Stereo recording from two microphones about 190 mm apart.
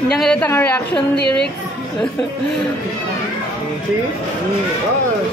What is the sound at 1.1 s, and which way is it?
Speech, 60° left (ahead or behind).